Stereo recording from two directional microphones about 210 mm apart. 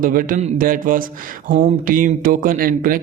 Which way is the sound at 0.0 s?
40° right (ahead or behind).